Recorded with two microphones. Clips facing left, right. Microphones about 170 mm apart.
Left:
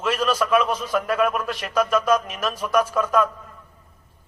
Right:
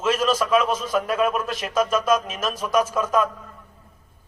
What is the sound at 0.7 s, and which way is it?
Speech, 15° left (ahead or behind).